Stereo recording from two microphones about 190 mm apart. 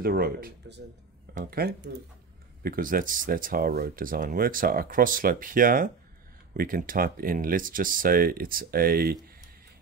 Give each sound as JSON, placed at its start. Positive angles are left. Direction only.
{"t": 0.0, "sound": "speech", "side_deg": -50}